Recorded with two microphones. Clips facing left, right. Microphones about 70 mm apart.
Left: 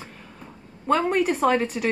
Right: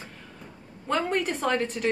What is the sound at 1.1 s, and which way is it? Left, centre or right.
Speech, centre.